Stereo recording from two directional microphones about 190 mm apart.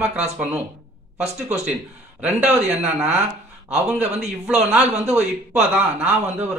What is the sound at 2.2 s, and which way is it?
Speech, 10° right (ahead or behind).